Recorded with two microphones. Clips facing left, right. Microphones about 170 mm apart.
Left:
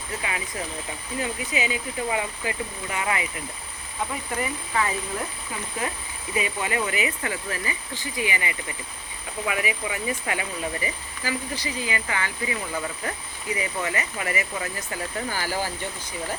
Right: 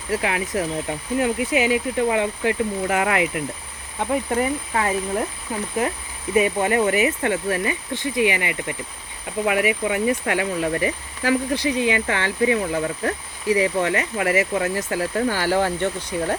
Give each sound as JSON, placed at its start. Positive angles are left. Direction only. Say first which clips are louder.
{"t": 0.1, "sound": "speech", "louder": "right 9 dB", "side_deg": -70}
{"t": 4.4, "sound": "speech", "louder": "right 5 dB", "side_deg": -45}
{"t": 6.3, "sound": "speech", "louder": "right 8 dB", "side_deg": -50}
{"t": 13.5, "sound": "speech", "louder": "right 9 dB", "side_deg": -75}